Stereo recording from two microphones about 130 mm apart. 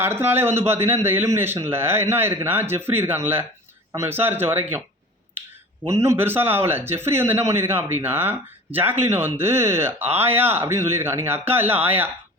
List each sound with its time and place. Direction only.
0.0 s speech: 15° right (ahead or behind)
5.9 s speech: 20° right (ahead or behind)